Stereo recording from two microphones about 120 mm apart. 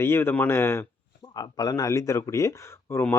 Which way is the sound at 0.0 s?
20° left (ahead or behind).